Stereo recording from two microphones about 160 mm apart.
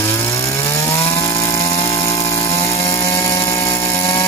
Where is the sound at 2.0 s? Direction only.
20° left (ahead or behind).